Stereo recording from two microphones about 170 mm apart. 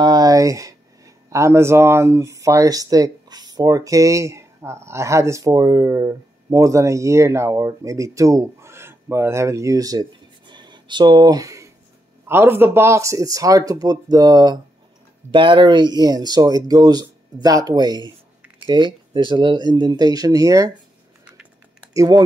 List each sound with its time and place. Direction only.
0.0 s speech: 25° right (ahead or behind)
21.8 s speech: 20° right (ahead or behind)